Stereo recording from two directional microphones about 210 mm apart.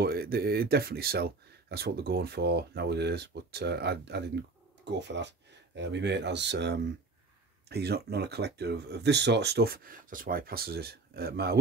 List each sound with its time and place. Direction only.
0.0 s speech: 45° right (ahead or behind)